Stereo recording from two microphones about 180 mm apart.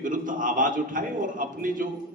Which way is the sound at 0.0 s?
45° right (ahead or behind).